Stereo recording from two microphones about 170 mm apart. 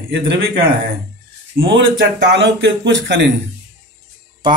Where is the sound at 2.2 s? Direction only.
90° right.